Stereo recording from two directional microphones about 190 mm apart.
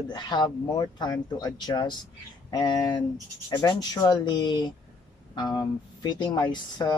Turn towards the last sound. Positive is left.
turn(degrees=20)  # may be behind; listen again after turning